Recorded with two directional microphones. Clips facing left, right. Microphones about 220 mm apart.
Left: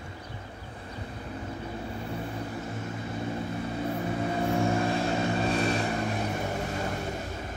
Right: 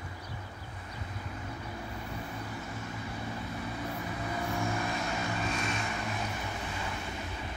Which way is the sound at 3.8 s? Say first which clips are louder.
Left 7 dB; 30° left (ahead or behind).